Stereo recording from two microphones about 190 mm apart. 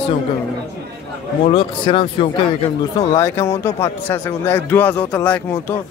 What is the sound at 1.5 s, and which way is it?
Speech, 25° left (ahead or behind).